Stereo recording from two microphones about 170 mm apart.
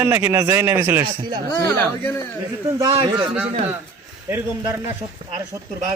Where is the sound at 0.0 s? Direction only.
15° right (ahead or behind).